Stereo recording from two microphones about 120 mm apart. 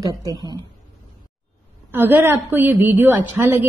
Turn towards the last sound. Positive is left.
turn(degrees=-15)  # may be behind; listen again after turning